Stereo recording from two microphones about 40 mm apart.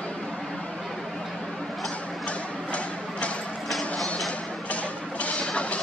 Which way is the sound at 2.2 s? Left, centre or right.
Left.